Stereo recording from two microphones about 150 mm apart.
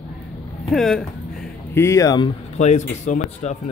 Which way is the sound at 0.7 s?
Centre (ahead or behind).